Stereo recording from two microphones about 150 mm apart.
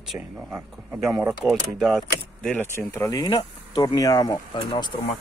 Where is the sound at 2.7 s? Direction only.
20° left (ahead or behind).